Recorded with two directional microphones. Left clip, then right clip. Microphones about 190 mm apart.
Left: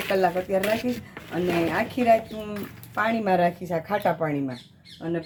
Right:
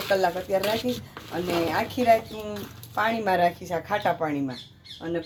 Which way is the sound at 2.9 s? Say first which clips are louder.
Left 1 dB; 50° left (ahead or behind).